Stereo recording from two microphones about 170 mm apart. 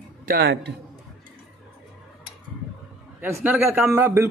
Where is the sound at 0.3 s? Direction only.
90° right.